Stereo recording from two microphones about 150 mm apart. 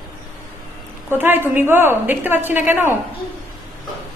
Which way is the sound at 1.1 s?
15° right (ahead or behind).